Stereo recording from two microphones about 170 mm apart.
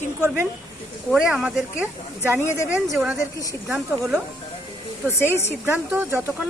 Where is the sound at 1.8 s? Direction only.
15° right (ahead or behind).